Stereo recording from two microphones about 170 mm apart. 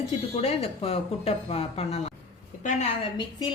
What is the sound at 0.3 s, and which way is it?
A woman's voice, 35° left (ahead or behind).